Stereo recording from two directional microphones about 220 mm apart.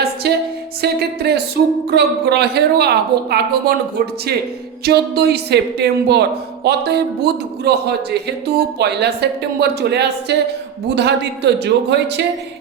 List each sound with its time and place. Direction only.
0.0 s music: 45° right (ahead or behind)
1.2 s speech: 45° right (ahead or behind)